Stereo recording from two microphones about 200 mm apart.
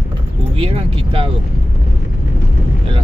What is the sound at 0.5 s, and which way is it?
Keys jangling, 30° right (ahead or behind).